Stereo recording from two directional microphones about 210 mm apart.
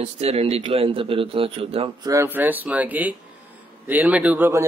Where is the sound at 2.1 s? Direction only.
10° right (ahead or behind).